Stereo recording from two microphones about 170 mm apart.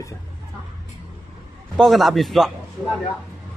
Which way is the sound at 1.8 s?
Centre (ahead or behind).